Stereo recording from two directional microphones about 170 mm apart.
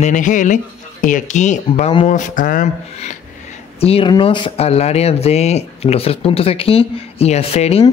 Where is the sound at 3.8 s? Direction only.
35° left (ahead or behind).